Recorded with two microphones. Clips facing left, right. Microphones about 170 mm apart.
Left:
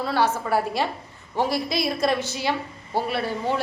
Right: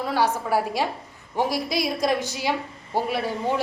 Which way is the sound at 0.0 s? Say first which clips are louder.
Even; 15° right (ahead or behind).